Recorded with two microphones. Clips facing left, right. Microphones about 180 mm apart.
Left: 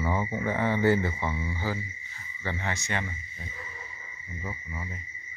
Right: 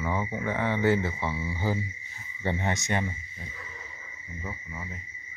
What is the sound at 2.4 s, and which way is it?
Speech, 20° right (ahead or behind).